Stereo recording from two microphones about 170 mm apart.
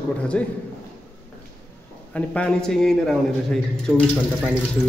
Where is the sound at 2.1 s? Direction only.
5° left (ahead or behind).